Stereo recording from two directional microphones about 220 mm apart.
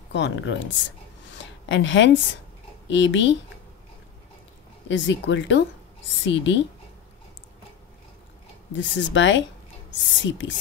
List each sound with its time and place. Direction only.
0.1 s speech: 55° left (ahead or behind)
1.2 s a sound: 55° left (ahead or behind)
2.9 s speech: 55° left (ahead or behind)
4.8 s speech: 55° left (ahead or behind)
8.7 s speech: 55° left (ahead or behind)